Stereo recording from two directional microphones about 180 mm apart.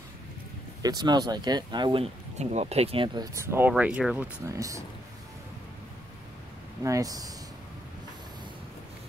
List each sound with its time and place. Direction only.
0.8 s speech: 20° right (ahead or behind)
3.3 s speech: 15° right (ahead or behind)
4.5 s speech: 15° right (ahead or behind)
6.8 s speech: 20° right (ahead or behind)